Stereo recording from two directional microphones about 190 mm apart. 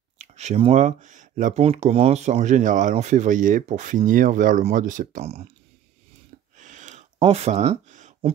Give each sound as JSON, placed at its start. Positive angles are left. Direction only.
{"t": 0.2, "sound": "speech", "side_deg": -35}
{"t": 6.6, "sound": "a sound", "side_deg": -40}
{"t": 7.2, "sound": "speech", "side_deg": -30}